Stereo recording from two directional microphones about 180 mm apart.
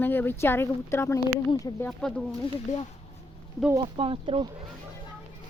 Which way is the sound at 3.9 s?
30° right (ahead or behind).